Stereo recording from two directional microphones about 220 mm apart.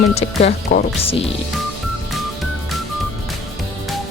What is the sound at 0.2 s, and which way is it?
Speech, 35° left (ahead or behind).